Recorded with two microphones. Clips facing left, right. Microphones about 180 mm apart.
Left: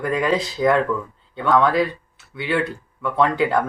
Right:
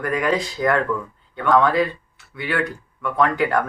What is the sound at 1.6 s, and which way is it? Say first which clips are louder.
Speech: left 1 dB; 15° left (ahead or behind).